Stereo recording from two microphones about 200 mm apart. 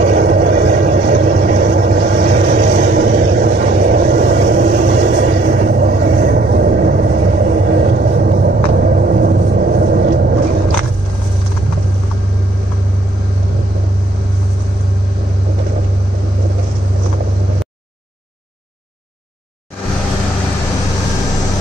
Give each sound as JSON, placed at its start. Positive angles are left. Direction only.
{"t": 0.0, "sound": "vehicle", "side_deg": -45}